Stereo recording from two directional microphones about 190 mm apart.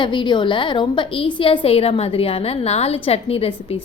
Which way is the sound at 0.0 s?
25° left (ahead or behind).